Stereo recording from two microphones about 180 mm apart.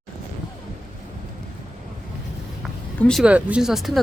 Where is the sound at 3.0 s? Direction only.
Centre (ahead or behind).